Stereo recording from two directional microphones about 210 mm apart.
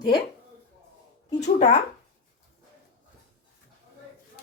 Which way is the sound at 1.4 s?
35° left (ahead or behind).